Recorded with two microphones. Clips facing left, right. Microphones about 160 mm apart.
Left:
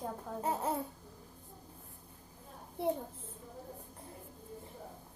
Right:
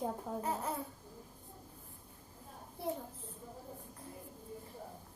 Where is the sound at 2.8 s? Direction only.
25° left (ahead or behind).